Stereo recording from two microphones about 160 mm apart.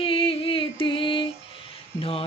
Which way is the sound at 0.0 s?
35° left (ahead or behind).